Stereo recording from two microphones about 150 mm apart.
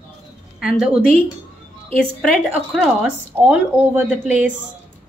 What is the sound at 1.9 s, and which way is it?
Speech, 5° left (ahead or behind).